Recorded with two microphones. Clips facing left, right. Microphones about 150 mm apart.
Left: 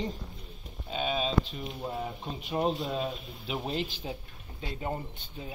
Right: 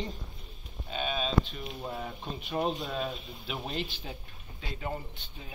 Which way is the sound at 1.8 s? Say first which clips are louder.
Left 3 dB; 10° left (ahead or behind).